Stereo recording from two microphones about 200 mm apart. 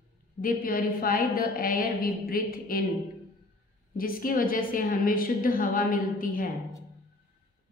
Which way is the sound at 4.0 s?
45° left (ahead or behind).